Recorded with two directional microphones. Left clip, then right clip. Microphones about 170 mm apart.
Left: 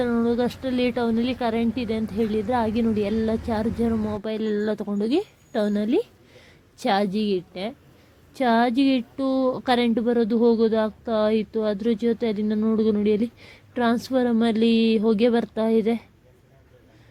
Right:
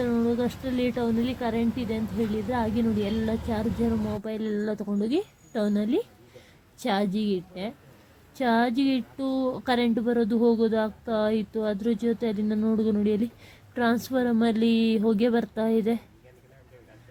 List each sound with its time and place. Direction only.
0.0 s a woman's voice: 20° left (ahead or behind)